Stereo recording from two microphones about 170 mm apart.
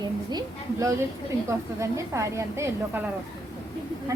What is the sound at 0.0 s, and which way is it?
A woman's voice, 25° right (ahead or behind).